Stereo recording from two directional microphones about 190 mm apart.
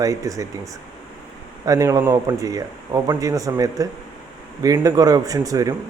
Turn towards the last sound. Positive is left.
turn(degrees=-20)  # may be behind; listen again after turning